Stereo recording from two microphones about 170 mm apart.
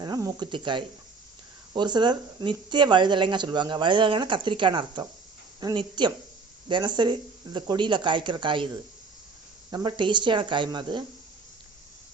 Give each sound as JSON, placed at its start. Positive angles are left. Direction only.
{"t": 0.0, "sound": "speech", "side_deg": -20}
{"t": 9.6, "sound": "speech", "side_deg": -25}